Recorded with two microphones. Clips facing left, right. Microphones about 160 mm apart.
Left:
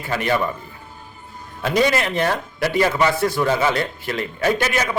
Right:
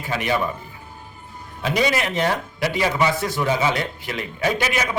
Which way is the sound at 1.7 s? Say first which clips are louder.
Left 3 dB; 15° right (ahead or behind).